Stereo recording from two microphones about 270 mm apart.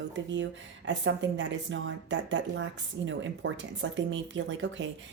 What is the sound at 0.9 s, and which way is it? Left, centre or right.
Speech, right.